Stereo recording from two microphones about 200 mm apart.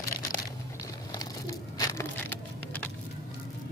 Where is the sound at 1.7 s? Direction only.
15° left (ahead or behind).